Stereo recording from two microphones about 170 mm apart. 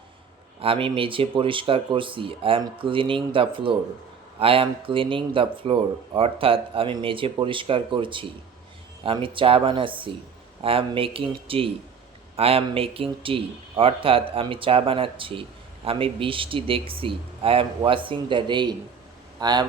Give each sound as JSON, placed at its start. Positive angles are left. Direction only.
{"t": 0.6, "sound": "speech", "side_deg": -30}